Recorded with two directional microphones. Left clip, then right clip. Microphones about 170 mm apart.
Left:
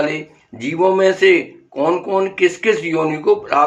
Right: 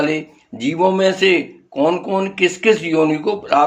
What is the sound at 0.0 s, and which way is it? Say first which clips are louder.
Speech: right 1 dB; 30° right (ahead or behind).